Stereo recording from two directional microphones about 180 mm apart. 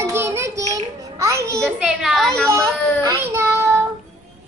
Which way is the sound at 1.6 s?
Centre (ahead or behind).